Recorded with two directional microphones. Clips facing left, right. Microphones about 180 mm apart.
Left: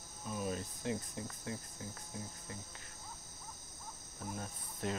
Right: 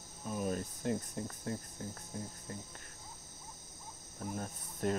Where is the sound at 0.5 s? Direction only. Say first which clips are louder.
Right 3 dB; 50° right (ahead or behind).